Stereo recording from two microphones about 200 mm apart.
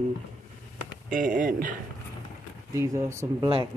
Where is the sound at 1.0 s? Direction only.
40° right (ahead or behind).